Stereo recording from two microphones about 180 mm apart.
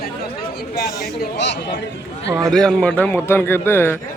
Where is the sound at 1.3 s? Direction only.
75° left (ahead or behind).